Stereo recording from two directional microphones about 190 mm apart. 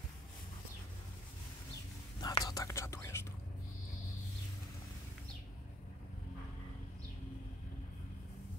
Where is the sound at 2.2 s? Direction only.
20° left (ahead or behind).